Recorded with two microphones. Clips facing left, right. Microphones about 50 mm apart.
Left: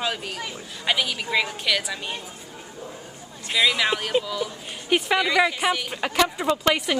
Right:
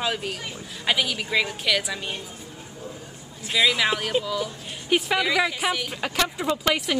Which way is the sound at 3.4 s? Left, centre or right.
Centre.